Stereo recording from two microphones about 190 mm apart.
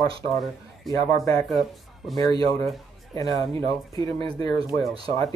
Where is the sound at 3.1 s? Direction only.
20° left (ahead or behind).